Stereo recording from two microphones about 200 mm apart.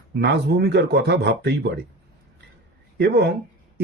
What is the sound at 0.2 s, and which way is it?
Speech, 55° right (ahead or behind).